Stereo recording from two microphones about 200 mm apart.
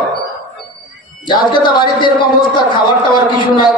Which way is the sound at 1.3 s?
25° left (ahead or behind).